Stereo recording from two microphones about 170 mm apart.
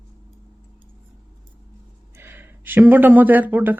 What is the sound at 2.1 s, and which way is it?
Speech, 15° right (ahead or behind).